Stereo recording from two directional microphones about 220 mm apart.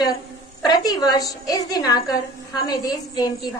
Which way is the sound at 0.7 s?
20° left (ahead or behind).